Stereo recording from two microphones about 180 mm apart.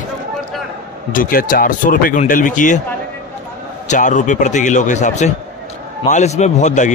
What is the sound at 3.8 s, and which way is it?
A man's voice, 45° left (ahead or behind).